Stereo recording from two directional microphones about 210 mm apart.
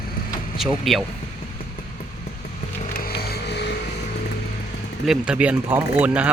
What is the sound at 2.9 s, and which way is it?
Vehicle, 45° left (ahead or behind).